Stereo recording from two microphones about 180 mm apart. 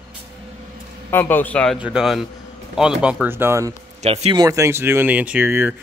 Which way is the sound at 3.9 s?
35° right (ahead or behind).